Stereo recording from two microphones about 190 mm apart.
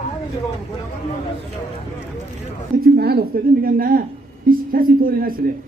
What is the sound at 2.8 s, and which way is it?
A man's voice, 55° right (ahead or behind).